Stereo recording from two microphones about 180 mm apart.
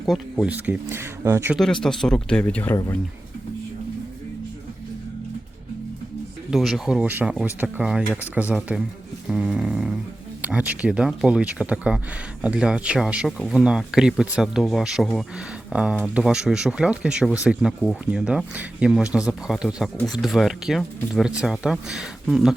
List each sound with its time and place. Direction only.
0.0 s speech: centre (ahead or behind)
1.5 s speech: 5° left (ahead or behind)
6.5 s speech: centre (ahead or behind)